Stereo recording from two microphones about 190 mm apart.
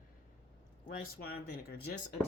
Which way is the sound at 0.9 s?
50° left (ahead or behind).